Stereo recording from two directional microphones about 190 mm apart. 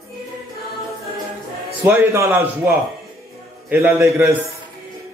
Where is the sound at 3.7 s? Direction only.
10° right (ahead or behind).